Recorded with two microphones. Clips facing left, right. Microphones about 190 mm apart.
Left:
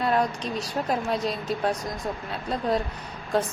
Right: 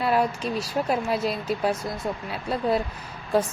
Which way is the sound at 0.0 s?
5° right (ahead or behind).